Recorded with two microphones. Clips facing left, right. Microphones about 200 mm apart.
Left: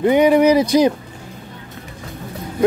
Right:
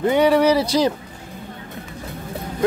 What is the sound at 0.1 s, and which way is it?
Speech, 15° left (ahead or behind).